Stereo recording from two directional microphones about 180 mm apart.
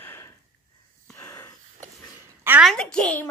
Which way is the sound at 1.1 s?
15° left (ahead or behind).